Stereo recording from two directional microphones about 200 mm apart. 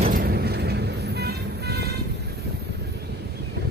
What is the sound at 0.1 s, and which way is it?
Vehicle, 50° right (ahead or behind).